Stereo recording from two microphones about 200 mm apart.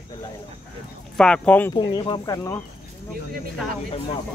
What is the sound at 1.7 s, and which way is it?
Speech, 20° left (ahead or behind).